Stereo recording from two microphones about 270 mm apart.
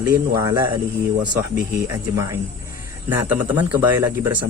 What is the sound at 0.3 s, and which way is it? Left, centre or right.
Speech, centre.